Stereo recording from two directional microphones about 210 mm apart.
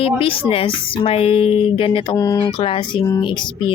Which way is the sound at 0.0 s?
25° left (ahead or behind).